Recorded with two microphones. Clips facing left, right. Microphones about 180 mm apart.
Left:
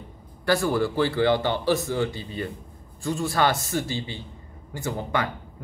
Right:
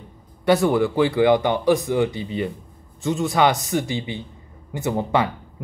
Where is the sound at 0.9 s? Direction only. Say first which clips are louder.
Right 5 dB; 15° right (ahead or behind).